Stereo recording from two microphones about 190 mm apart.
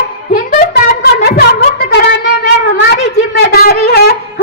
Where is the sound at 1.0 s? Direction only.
60° left (ahead or behind).